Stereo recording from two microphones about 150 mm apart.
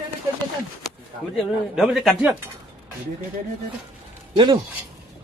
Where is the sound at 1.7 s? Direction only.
Centre (ahead or behind).